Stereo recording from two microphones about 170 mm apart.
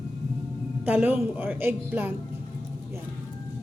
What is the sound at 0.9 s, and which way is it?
A woman's voice, 10° right (ahead or behind).